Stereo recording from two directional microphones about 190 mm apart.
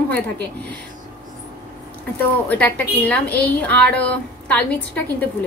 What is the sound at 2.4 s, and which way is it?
A woman's voice, 10° left (ahead or behind).